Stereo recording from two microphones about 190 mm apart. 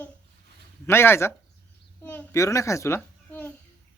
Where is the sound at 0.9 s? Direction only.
10° left (ahead or behind).